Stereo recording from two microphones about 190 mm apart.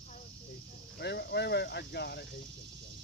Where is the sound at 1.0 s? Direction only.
60° left (ahead or behind).